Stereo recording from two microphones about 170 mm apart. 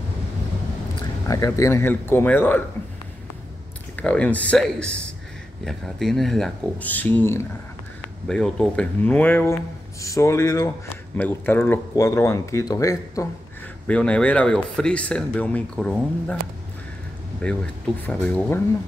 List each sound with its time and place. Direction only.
1.2 s speech: 20° left (ahead or behind)
3.9 s speech: 10° left (ahead or behind)
13.8 s speech: 5° left (ahead or behind)
17.4 s speech: 5° left (ahead or behind)